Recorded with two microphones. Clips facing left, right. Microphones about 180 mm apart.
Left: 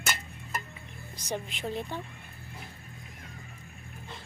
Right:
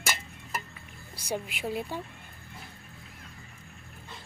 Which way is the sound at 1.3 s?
10° right (ahead or behind).